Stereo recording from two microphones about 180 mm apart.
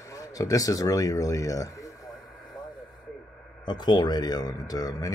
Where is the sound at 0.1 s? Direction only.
20° left (ahead or behind).